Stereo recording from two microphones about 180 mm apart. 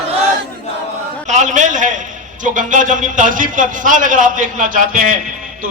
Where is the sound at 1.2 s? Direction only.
40° right (ahead or behind).